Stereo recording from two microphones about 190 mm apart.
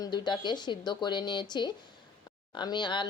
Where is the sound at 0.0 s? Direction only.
25° left (ahead or behind).